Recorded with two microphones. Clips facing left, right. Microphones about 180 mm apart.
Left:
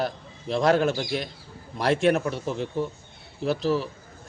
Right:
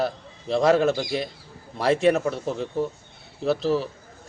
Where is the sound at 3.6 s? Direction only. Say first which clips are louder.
Right 1 dB; 35° right (ahead or behind).